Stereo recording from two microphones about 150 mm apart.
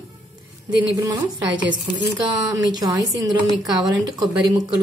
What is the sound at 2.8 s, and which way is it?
A woman's voice, 25° right (ahead or behind).